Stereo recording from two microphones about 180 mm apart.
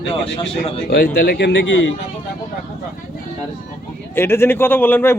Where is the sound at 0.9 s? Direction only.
60° left (ahead or behind); by 1.9 s 85° left.